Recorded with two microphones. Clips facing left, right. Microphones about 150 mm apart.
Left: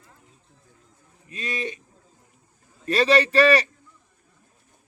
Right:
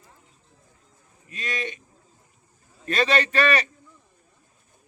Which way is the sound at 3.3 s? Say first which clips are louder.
Left 6 dB; 35° left (ahead or behind).